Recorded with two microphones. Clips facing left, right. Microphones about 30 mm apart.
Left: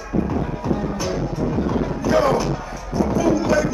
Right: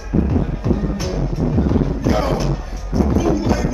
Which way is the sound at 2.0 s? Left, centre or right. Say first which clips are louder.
Left 1 dB; centre.